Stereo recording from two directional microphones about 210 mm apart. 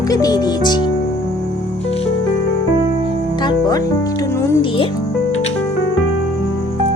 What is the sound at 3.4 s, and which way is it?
Music, 20° left (ahead or behind).